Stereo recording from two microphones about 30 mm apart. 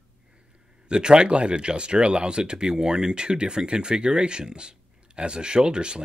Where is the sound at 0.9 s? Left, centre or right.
Right.